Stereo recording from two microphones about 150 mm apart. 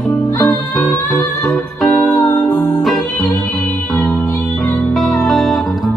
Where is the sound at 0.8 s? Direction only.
Centre (ahead or behind).